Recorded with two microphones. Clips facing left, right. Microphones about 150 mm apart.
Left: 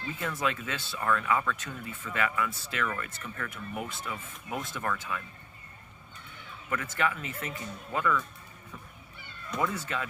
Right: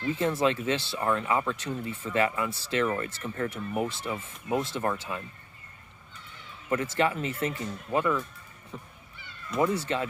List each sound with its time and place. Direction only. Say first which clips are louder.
0.0 s speech: right 7 dB; 30° right (ahead or behind)
6.7 s speech: right 5 dB; 30° right (ahead or behind)
9.6 s speech: right 5 dB; 30° right (ahead or behind)